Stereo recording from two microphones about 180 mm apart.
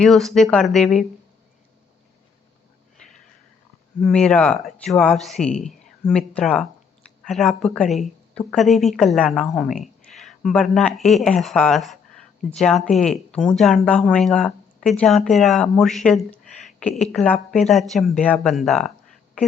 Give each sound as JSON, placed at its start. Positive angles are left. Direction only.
{"t": 0.0, "sound": "speech", "side_deg": 0}
{"t": 4.0, "sound": "speech", "side_deg": 5}